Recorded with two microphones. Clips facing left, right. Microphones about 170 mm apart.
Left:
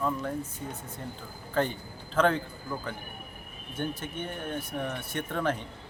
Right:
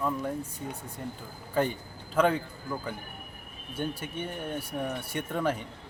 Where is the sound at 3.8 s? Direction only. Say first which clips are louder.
Even; 10° right (ahead or behind).